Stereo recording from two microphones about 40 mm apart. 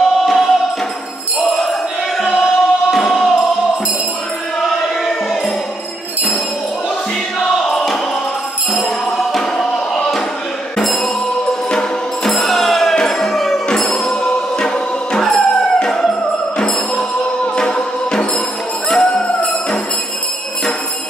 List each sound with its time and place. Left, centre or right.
0.0 s music: centre
1.6 s a sound: centre
2.3 s choir: centre
3.0 s music: centre
7.3 s music: centre
10.8 s music: centre
12.3 s music: centre
15.3 s music: centre
17.6 s music: left